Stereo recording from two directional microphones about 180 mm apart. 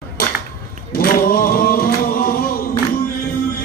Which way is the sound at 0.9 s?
55° left (ahead or behind).